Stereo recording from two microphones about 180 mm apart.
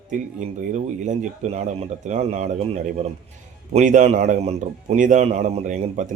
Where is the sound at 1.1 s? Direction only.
35° right (ahead or behind).